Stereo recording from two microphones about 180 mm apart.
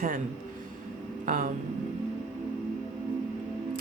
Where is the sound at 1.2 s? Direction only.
50° right (ahead or behind).